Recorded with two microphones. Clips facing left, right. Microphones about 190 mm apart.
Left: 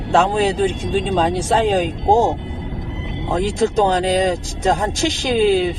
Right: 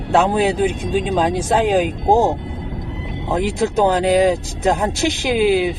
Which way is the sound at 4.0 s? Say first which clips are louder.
Right 3 dB; centre (ahead or behind).